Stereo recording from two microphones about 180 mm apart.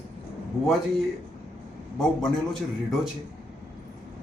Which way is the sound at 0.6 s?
Centre (ahead or behind).